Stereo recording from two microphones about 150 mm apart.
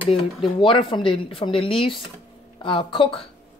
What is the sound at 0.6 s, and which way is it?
Speech, 35° left (ahead or behind).